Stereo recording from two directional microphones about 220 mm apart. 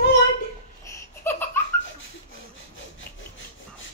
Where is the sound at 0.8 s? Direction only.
10° left (ahead or behind).